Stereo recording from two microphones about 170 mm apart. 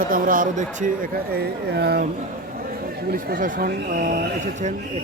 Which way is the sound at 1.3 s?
70° right (ahead or behind).